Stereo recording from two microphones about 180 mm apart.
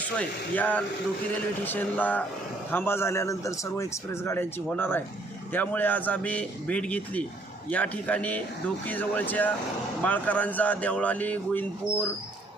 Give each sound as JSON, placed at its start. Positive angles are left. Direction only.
{"t": 0.2, "sound": "a man's voice", "side_deg": 10}